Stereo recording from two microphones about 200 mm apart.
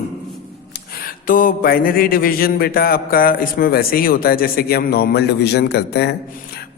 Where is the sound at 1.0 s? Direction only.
45° left (ahead or behind).